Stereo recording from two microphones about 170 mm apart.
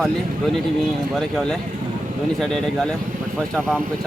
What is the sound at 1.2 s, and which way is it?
Speech, 5° left (ahead or behind).